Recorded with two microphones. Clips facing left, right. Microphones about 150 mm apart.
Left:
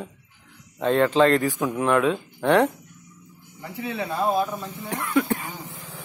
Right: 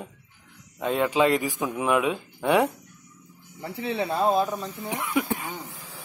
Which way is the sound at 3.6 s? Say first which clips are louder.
Right 2 dB; 30° right (ahead or behind).